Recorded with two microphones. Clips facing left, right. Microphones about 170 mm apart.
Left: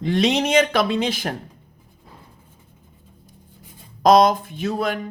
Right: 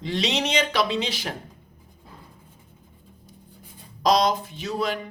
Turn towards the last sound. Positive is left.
turn(degrees=50)  # may be behind; listen again after turning